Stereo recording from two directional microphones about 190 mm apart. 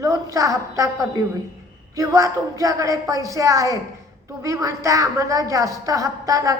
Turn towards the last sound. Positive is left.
turn(degrees=-20)  # may be behind; listen again after turning